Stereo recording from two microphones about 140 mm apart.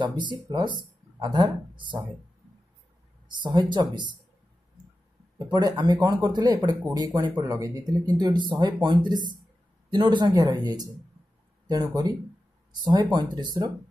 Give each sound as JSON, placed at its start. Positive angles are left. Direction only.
{"t": 0.0, "sound": "speech", "side_deg": -35}
{"t": 3.3, "sound": "speech", "side_deg": -30}
{"t": 5.5, "sound": "speech", "side_deg": -30}